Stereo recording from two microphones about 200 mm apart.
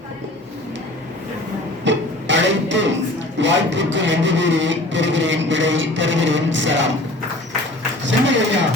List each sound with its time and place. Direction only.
1.8 s a sound: 65° right (ahead or behind)
3.3 s speech: 65° right (ahead or behind)
8.0 s speech: 65° right (ahead or behind)